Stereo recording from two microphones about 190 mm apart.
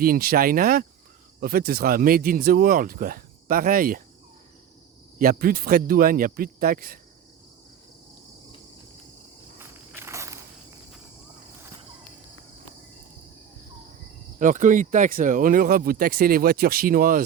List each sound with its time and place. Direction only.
0.0 s speech: 50° right (ahead or behind)
5.1 s speech: 50° right (ahead or behind)
9.6 s insect: 10° right (ahead or behind)
14.3 s speech: 45° right (ahead or behind)